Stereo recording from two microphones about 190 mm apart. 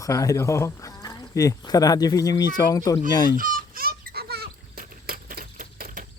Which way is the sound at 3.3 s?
45° right (ahead or behind).